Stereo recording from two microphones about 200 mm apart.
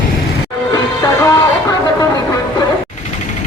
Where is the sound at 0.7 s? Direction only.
20° left (ahead or behind).